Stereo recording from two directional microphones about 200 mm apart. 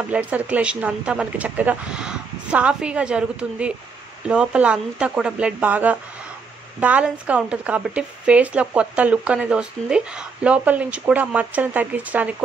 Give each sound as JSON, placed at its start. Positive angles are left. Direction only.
{"t": 0.1, "sound": "speech", "side_deg": -5}